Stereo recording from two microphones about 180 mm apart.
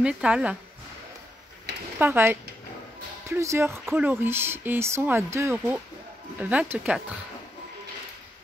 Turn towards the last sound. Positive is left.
turn(degrees=-5)  # may be behind; listen again after turning